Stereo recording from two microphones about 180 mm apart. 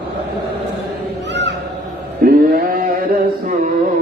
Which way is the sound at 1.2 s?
75° right (ahead or behind).